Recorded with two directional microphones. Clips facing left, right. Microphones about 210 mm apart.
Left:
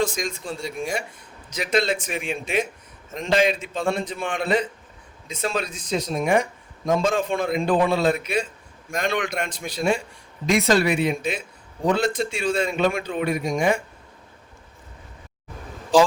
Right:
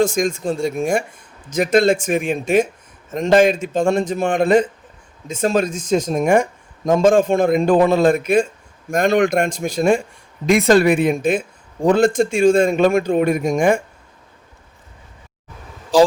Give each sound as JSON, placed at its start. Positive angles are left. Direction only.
{"t": 0.0, "sound": "speech", "side_deg": -50}